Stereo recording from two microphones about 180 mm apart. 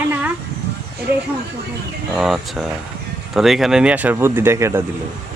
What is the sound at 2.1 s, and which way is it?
Speech, centre (ahead or behind).